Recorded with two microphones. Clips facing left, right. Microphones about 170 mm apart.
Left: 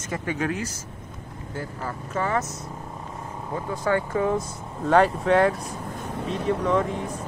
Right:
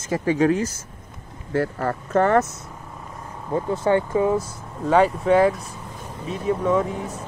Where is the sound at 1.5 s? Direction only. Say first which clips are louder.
Right 10 dB; 65° right (ahead or behind).